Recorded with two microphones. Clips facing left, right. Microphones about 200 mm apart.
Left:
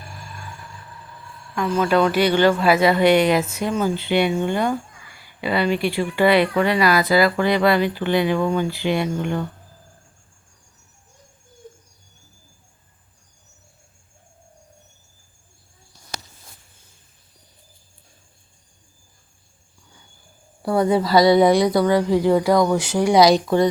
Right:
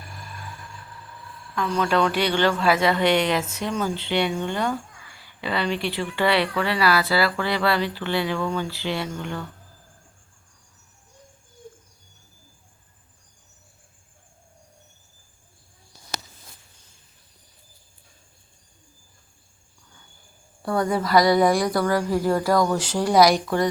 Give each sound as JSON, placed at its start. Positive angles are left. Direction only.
{"t": 1.7, "sound": "speech", "side_deg": 5}
{"t": 20.6, "sound": "speech", "side_deg": 20}